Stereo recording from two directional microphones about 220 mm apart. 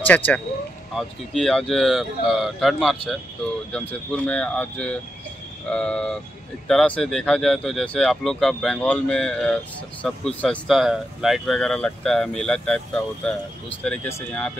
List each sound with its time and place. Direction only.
0.0 s speech: 5° left (ahead or behind)